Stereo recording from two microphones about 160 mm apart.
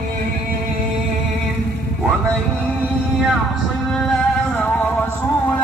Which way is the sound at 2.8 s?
5° right (ahead or behind).